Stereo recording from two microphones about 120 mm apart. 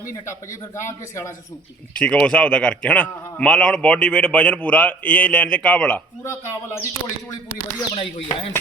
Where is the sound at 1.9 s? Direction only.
10° left (ahead or behind).